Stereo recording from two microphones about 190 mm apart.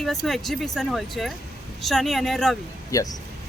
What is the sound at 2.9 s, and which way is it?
Speech, 20° left (ahead or behind).